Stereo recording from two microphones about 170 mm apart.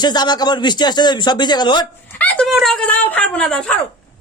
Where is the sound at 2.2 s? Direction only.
10° left (ahead or behind).